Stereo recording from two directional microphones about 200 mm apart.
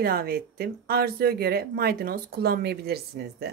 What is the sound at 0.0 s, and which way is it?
Speech, 50° right (ahead or behind).